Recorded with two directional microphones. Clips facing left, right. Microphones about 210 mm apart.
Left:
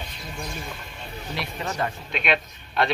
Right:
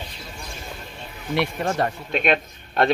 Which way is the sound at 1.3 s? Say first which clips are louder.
Right 7 dB; 50° right (ahead or behind).